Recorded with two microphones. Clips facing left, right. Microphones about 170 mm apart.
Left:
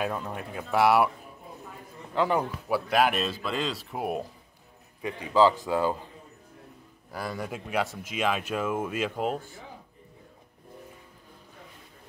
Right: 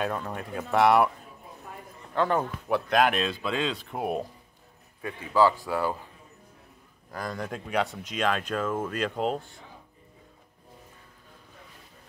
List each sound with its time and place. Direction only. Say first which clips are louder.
0.0 s speech: right 1 dB; 5° left (ahead or behind)
2.1 s speech: even; 10° left (ahead or behind)
5.0 s a man's voice: left 1 dB; 20° left (ahead or behind)
7.1 s speech: even; 10° left (ahead or behind)